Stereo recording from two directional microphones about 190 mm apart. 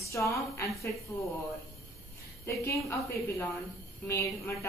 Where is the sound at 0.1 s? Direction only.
15° left (ahead or behind).